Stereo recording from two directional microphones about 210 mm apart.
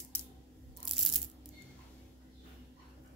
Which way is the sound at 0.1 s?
5° left (ahead or behind).